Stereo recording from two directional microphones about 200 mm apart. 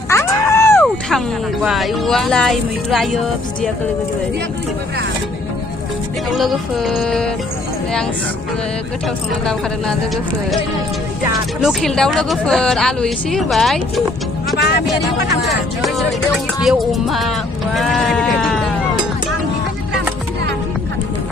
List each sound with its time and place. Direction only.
0.1 s a sound: 15° left (ahead or behind)
1.6 s a woman's voice: centre (ahead or behind)
6.3 s a woman's voice: centre (ahead or behind)
9.5 s a woman's voice: 5° left (ahead or behind)
11.6 s a woman's voice: centre (ahead or behind)
14.5 s speech: 55° left (ahead or behind)
16.6 s a woman's voice: centre (ahead or behind)